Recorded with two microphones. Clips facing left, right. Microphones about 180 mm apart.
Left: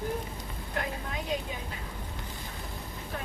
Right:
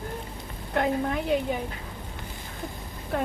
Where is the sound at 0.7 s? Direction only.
60° right (ahead or behind).